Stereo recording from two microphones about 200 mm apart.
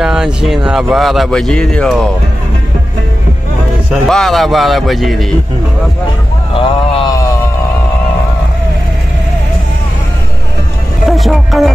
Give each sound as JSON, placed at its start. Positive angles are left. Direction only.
{"t": 0.0, "sound": "speech", "side_deg": -5}
{"t": 3.9, "sound": "speech", "side_deg": 0}
{"t": 6.5, "sound": "a sound", "side_deg": 20}
{"t": 11.1, "sound": "music", "side_deg": 0}